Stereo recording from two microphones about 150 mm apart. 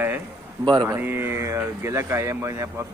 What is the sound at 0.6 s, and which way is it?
Speech, 30° right (ahead or behind).